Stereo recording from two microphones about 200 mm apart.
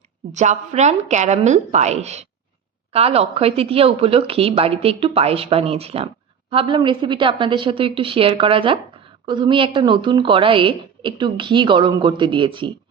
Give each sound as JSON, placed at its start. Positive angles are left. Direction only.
{"t": 0.3, "sound": "a woman's voice", "side_deg": -35}